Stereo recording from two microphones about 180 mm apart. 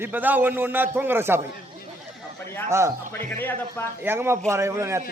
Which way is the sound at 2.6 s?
15° right (ahead or behind).